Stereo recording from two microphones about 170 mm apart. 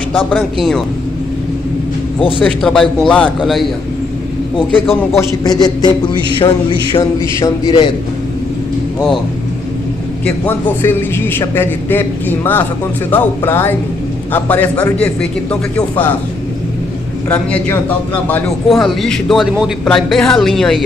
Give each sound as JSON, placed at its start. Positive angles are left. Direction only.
{"t": 0.3, "sound": "a man's voice", "side_deg": 5}
{"t": 2.1, "sound": "speech", "side_deg": 30}
{"t": 2.4, "sound": "a man's voice", "side_deg": 5}
{"t": 5.1, "sound": "a man's voice", "side_deg": 25}
{"t": 7.0, "sound": "a man's voice", "side_deg": 15}
{"t": 10.2, "sound": "a man's voice", "side_deg": 10}
{"t": 17.3, "sound": "a man's voice", "side_deg": 10}